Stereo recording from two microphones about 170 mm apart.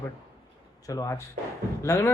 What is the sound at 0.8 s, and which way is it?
Speech, 20° left (ahead or behind).